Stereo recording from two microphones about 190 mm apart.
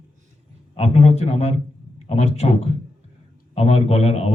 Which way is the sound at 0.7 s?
35° left (ahead or behind).